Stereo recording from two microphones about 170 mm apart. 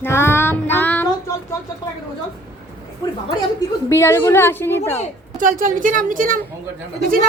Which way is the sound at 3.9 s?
15° left (ahead or behind).